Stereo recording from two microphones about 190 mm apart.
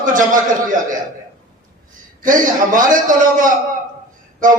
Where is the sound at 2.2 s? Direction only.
45° right (ahead or behind).